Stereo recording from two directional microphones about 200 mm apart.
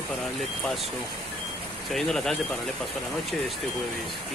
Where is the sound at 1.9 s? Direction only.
Centre (ahead or behind).